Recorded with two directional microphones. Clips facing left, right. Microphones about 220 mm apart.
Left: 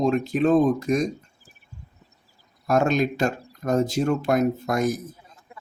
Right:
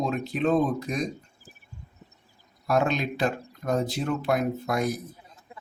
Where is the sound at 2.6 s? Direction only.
45° left (ahead or behind).